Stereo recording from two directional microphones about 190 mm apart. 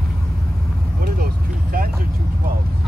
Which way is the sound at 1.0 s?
50° right (ahead or behind).